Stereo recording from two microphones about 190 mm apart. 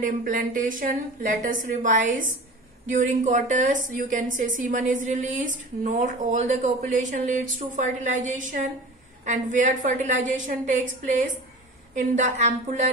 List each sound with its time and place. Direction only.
0.0 s a woman's voice: 45° right (ahead or behind)
11.9 s a woman's voice: 35° right (ahead or behind)